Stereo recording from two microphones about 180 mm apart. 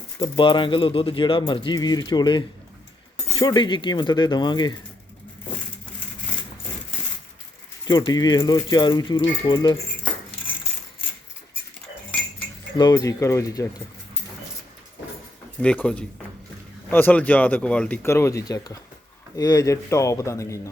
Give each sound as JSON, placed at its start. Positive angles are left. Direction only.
{"t": 0.2, "sound": "speech", "side_deg": 25}
{"t": 7.9, "sound": "speech", "side_deg": 20}
{"t": 12.7, "sound": "speech", "side_deg": 20}
{"t": 15.6, "sound": "speech", "side_deg": 5}